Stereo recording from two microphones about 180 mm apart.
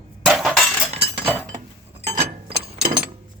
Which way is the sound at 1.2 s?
15° right (ahead or behind).